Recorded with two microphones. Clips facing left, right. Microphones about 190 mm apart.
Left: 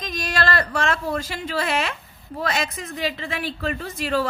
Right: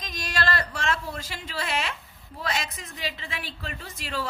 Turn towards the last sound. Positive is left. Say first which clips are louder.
# left 9 dB
turn(degrees=60)  # may be behind; listen again after turning